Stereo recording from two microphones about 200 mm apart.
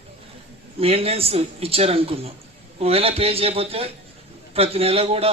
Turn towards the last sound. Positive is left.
turn(degrees=-30)  # may be behind; listen again after turning